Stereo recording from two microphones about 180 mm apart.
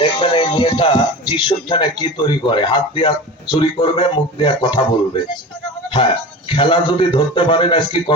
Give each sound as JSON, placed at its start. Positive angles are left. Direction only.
{"t": 0.0, "sound": "speech", "side_deg": 30}
{"t": 6.5, "sound": "a man's voice", "side_deg": 30}